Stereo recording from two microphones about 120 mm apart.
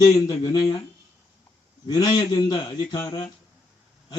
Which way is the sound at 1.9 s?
35° left (ahead or behind).